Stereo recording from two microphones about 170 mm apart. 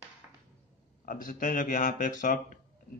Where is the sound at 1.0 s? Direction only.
55° left (ahead or behind).